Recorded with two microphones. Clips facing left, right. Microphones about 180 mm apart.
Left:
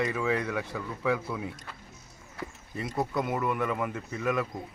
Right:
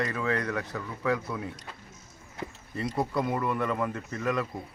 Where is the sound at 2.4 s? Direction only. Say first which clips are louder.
Right 1 dB; 25° right (ahead or behind).